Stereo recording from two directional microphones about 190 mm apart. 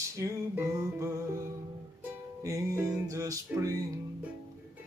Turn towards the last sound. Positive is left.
turn(degrees=-15)  # may be behind; listen again after turning